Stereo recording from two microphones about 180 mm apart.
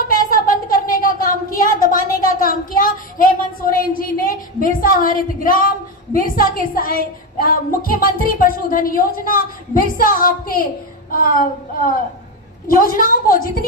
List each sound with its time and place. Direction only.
0.1 s a sound: 50° left (ahead or behind)
6.1 s a woman's voice: 50° left (ahead or behind)
12.6 s a woman's voice: 50° left (ahead or behind)